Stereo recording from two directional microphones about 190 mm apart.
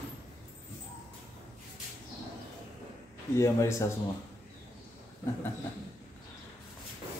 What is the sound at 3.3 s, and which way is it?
Speech, 15° left (ahead or behind).